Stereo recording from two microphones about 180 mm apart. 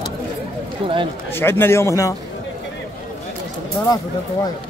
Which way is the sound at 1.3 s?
10° left (ahead or behind).